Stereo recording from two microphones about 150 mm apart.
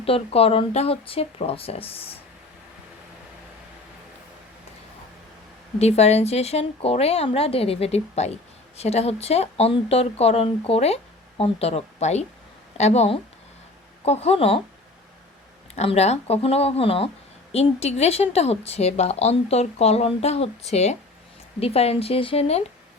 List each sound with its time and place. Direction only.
0.0 s speech: 40° left (ahead or behind)
5.8 s a woman's voice: 45° left (ahead or behind)
15.7 s a woman's voice: 45° left (ahead or behind)